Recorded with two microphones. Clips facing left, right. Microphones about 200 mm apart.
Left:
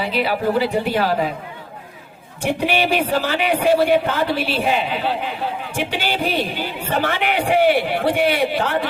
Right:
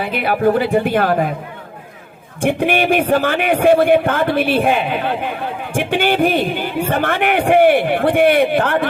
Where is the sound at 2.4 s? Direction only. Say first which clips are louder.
Right 4 dB; 50° right (ahead or behind).